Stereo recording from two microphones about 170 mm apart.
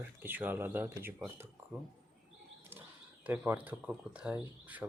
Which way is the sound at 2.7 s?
10° right (ahead or behind).